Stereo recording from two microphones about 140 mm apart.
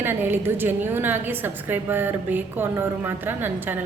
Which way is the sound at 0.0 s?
15° right (ahead or behind).